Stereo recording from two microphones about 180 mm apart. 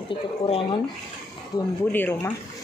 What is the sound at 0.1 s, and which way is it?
Speech, 30° left (ahead or behind).